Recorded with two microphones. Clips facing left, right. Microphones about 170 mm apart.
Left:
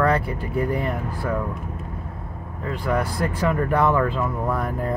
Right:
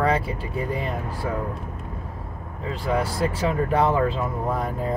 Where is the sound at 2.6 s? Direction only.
25° right (ahead or behind).